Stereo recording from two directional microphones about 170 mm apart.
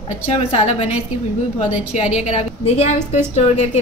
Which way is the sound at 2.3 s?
40° left (ahead or behind).